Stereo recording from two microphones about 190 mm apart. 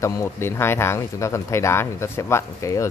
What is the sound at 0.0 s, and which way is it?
Speech, 15° left (ahead or behind).